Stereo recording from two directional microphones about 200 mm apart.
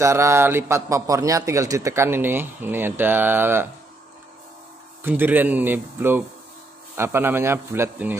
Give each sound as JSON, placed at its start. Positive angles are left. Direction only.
{"t": 0.0, "sound": "a man's voice", "side_deg": -15}
{"t": 5.0, "sound": "a man's voice", "side_deg": -10}